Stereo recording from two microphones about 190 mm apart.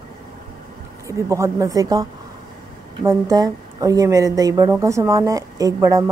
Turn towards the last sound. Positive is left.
turn(degrees=-15)  # may be behind; listen again after turning